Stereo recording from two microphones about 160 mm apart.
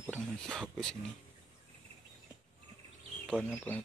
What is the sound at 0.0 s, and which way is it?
Speech, 5° right (ahead or behind).